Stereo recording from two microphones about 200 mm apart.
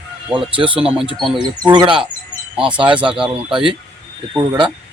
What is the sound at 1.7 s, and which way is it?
Speech, 25° right (ahead or behind).